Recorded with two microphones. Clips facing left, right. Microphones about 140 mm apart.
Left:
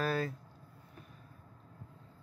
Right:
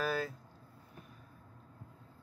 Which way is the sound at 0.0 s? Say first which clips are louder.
Left 1 dB; centre (ahead or behind).